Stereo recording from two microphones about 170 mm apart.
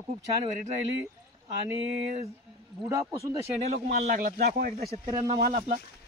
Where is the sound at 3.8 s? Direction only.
55° right (ahead or behind).